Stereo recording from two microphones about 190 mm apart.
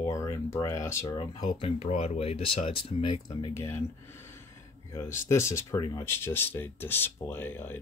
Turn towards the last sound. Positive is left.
turn(degrees=10)  # may be behind; listen again after turning